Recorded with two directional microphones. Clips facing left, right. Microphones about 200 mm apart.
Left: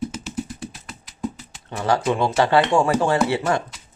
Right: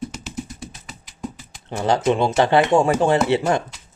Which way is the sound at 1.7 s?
25° right (ahead or behind).